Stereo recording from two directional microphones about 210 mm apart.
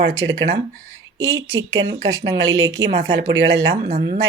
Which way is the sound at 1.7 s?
55° right (ahead or behind).